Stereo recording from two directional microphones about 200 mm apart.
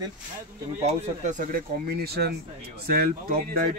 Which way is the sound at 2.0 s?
50° right (ahead or behind).